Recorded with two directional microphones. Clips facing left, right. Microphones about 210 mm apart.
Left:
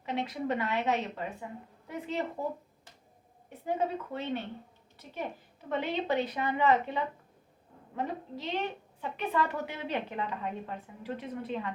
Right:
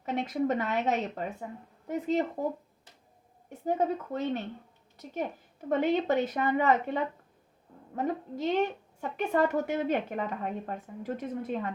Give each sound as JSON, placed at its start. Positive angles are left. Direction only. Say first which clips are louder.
{"t": 0.0, "sound": "a woman's voice", "louder": "right 4 dB", "side_deg": -45}
{"t": 3.7, "sound": "a woman's voice", "louder": "right 3 dB", "side_deg": -45}